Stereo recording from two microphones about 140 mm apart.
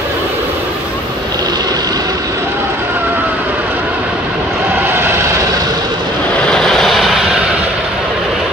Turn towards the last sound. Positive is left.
turn(degrees=-5)  # may be behind; listen again after turning